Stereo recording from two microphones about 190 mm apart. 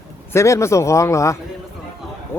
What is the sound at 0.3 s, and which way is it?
Speech, 15° left (ahead or behind).